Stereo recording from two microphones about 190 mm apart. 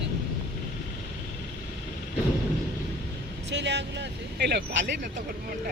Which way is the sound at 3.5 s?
65° right (ahead or behind).